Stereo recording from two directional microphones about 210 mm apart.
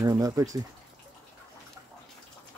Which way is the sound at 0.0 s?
15° right (ahead or behind).